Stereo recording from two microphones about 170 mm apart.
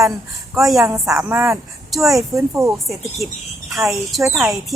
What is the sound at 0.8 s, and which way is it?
Speech, 20° right (ahead or behind).